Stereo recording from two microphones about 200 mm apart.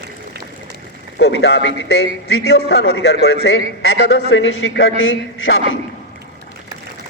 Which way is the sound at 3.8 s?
65° left (ahead or behind).